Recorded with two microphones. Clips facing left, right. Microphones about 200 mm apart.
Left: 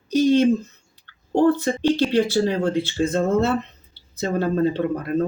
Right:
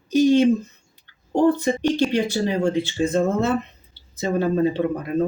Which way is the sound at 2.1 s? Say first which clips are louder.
Left 2 dB; 15° right (ahead or behind).